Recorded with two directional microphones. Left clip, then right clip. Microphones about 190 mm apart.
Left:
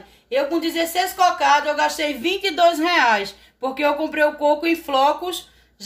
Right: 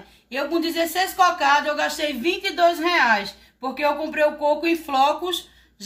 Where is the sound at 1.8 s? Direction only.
45° left (ahead or behind).